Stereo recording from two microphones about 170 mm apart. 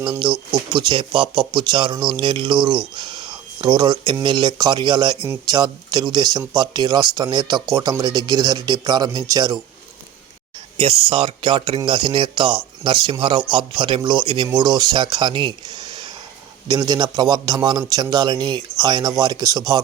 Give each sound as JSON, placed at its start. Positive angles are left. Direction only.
{"t": 0.2, "sound": "speech", "side_deg": -30}
{"t": 10.8, "sound": "speech", "side_deg": -35}